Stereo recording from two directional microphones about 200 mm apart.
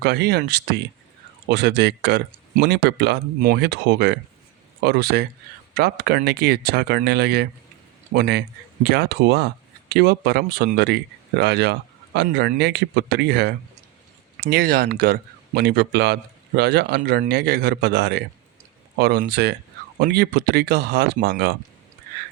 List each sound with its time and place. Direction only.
0.0 s a man's voice: 55° right (ahead or behind)